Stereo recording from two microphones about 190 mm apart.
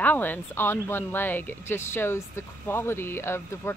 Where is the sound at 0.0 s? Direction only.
10° left (ahead or behind).